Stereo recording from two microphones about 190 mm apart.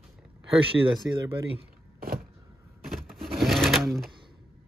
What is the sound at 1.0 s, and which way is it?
Speech, 5° right (ahead or behind).